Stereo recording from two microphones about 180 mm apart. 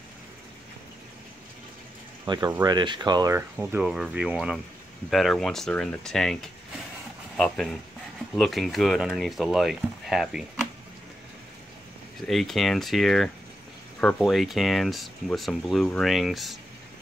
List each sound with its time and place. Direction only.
2.2 s speech: 25° right (ahead or behind)
3.5 s speech: 5° right (ahead or behind)
12.2 s speech: centre (ahead or behind)